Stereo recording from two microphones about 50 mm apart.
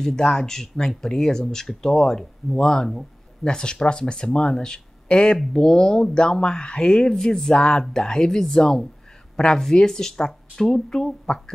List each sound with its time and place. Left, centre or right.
0.0 s speech: centre